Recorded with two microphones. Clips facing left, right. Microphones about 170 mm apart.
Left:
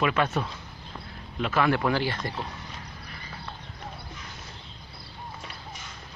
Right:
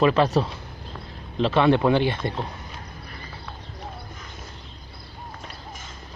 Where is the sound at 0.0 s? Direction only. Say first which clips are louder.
Right 6 dB; 35° right (ahead or behind).